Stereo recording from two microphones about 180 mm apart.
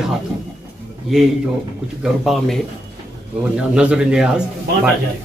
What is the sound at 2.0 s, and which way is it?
A man's voice, centre (ahead or behind).